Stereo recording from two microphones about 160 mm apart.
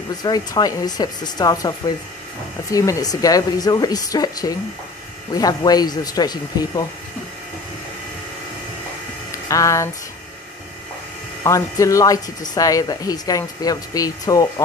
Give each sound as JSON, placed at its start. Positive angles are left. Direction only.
{"t": 0.2, "sound": "speech", "side_deg": 25}
{"t": 9.3, "sound": "speech", "side_deg": 20}
{"t": 11.4, "sound": "speech", "side_deg": 20}